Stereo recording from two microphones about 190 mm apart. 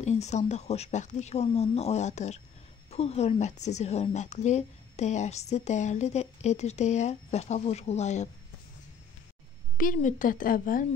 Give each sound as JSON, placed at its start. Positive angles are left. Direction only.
{"t": 0.0, "sound": "a woman's voice", "side_deg": 35}
{"t": 9.8, "sound": "a woman's voice", "side_deg": 45}